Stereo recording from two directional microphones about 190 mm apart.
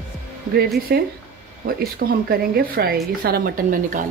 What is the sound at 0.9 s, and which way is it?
Speech, 55° right (ahead or behind).